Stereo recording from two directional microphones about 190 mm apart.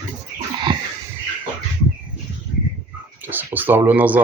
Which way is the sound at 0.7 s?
25° right (ahead or behind).